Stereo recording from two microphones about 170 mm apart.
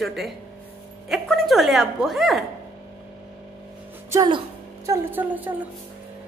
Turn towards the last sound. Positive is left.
turn(degrees=-10)  # may be behind; listen again after turning